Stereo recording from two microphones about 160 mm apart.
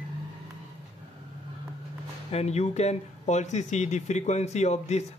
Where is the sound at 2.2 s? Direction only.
40° left (ahead or behind).